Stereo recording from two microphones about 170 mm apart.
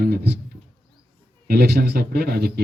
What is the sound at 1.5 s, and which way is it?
A man's voice, 70° right (ahead or behind).